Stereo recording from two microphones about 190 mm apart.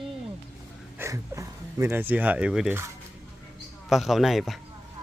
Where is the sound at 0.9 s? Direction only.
15° right (ahead or behind).